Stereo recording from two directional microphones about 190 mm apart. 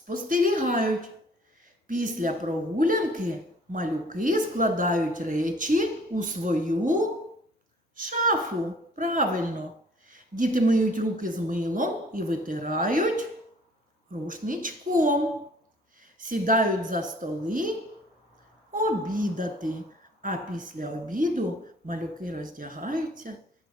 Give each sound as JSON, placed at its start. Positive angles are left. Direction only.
{"t": 0.1, "sound": "a woman's voice", "side_deg": -45}
{"t": 1.9, "sound": "a woman's voice", "side_deg": -45}
{"t": 14.3, "sound": "a woman's voice", "side_deg": -45}
{"t": 18.7, "sound": "a woman's voice", "side_deg": -45}